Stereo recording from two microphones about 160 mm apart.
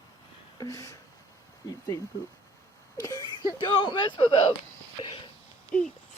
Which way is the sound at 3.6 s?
30° left (ahead or behind).